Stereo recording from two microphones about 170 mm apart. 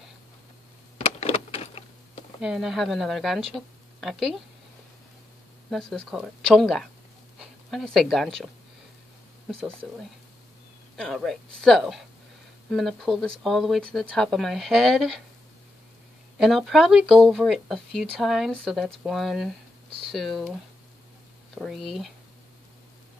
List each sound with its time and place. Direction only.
0.9 s power windows: 35° left (ahead or behind)
2.4 s speech: centre (ahead or behind)
5.7 s a woman's voice: 5° left (ahead or behind)
11.0 s speech: centre (ahead or behind)
16.3 s speech: centre (ahead or behind)
21.5 s speech: centre (ahead or behind)